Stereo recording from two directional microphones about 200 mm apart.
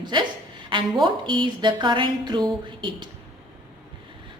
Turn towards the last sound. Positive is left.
turn(degrees=-25)  # may be behind; listen again after turning